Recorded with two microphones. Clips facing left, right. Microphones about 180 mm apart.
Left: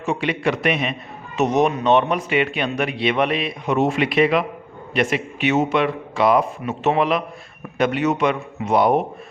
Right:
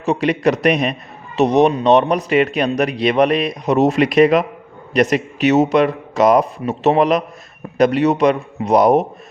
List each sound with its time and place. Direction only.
0.0 s speech: 40° right (ahead or behind)